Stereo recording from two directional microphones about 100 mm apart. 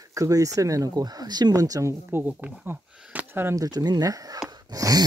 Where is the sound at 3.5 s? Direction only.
40° right (ahead or behind).